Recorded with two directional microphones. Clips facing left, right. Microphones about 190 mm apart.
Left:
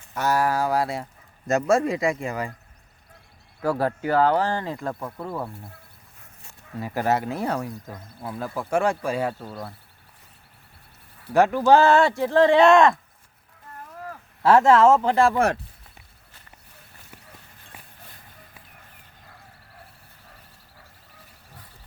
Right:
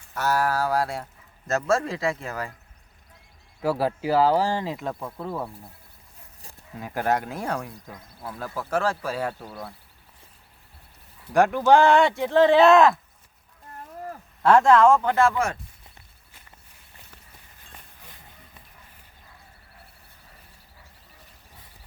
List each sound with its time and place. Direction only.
0.1 s speech: 10° left (ahead or behind)
3.6 s speech: 5° right (ahead or behind)
6.7 s speech: 5° left (ahead or behind)
8.5 s speech: 15° left (ahead or behind)
11.3 s speech: 5° left (ahead or behind)
14.8 s speech: 25° left (ahead or behind)